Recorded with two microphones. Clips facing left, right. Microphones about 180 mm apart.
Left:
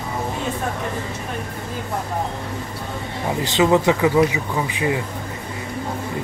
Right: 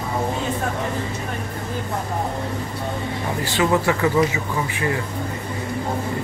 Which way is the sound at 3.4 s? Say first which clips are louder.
Left 4 dB; 20° left (ahead or behind).